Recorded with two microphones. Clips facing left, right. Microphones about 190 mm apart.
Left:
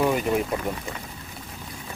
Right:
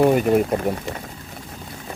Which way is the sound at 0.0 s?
50° right (ahead or behind).